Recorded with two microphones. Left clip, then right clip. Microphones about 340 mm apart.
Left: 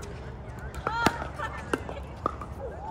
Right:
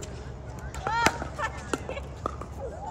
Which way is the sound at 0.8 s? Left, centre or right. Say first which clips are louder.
Right 2 dB; right.